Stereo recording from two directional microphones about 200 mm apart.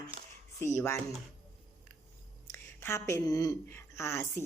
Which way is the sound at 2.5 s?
15° left (ahead or behind).